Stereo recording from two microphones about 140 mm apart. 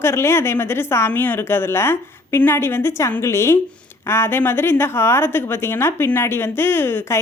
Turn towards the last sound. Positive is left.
turn(degrees=15)  # may be behind; listen again after turning